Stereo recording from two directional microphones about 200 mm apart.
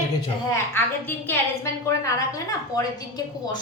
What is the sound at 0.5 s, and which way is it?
A woman's voice, 10° left (ahead or behind).